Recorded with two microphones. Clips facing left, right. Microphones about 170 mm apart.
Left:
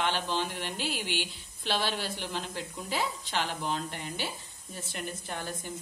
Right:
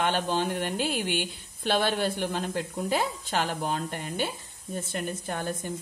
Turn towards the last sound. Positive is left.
turn(degrees=-50)  # may be behind; listen again after turning